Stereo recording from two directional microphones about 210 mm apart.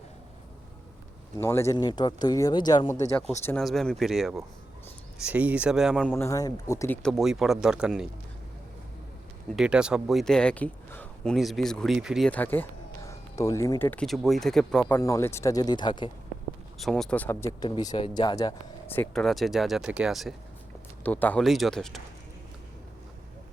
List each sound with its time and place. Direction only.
1.4 s speech: 10° left (ahead or behind)
2.9 s speech: 5° left (ahead or behind)
9.6 s speech: 5° right (ahead or behind); by 16.0 s 20° left (ahead or behind)
16.7 s speech: centre (ahead or behind)